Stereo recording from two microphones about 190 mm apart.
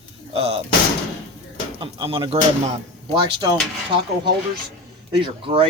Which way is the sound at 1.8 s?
25° right (ahead or behind).